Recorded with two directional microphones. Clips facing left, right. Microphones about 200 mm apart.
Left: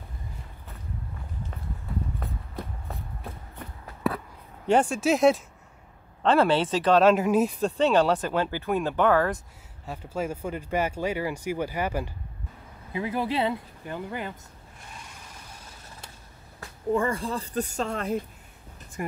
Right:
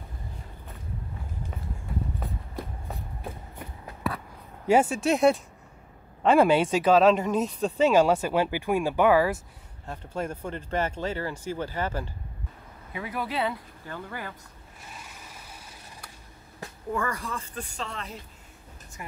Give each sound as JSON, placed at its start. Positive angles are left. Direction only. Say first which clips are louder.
{"t": 4.6, "sound": "speech", "louder": "even", "side_deg": -5}
{"t": 6.2, "sound": "speech", "louder": "right 2 dB", "side_deg": -10}
{"t": 7.7, "sound": "speech", "louder": "right 3 dB", "side_deg": -10}
{"t": 9.8, "sound": "speech", "louder": "left 2 dB", "side_deg": 5}
{"t": 12.9, "sound": "speech", "louder": "left 4 dB", "side_deg": 25}
{"t": 16.9, "sound": "speech", "louder": "left 5 dB", "side_deg": 25}